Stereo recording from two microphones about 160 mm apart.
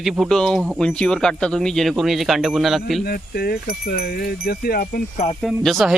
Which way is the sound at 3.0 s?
75° left (ahead or behind).